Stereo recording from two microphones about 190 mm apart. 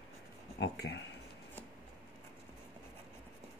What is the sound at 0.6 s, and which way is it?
Speech, 65° left (ahead or behind).